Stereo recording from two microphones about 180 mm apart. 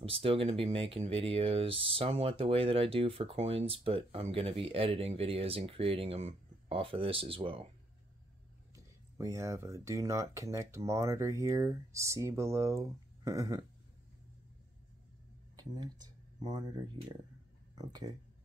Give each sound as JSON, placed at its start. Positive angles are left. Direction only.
{"t": 0.0, "sound": "speech", "side_deg": -30}
{"t": 8.7, "sound": "speech", "side_deg": -15}
{"t": 15.8, "sound": "speech", "side_deg": -20}